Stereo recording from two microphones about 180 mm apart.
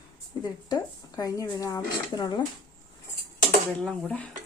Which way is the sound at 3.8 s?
5° left (ahead or behind).